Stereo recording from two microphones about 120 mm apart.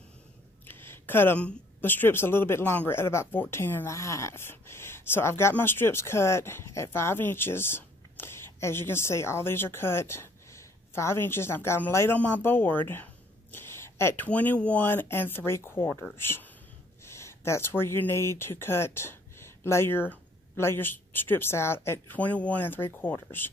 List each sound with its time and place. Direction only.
0.7 s a woman's voice: 20° left (ahead or behind)